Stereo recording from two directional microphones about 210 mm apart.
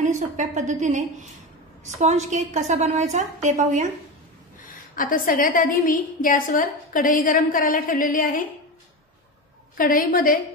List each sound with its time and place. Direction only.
0.4 s a woman's voice: 35° right (ahead or behind)
4.9 s a woman's voice: 40° left (ahead or behind)
9.8 s a woman's voice: 40° left (ahead or behind)